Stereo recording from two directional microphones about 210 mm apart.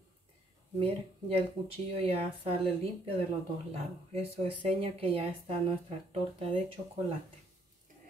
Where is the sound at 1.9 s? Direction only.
30° right (ahead or behind).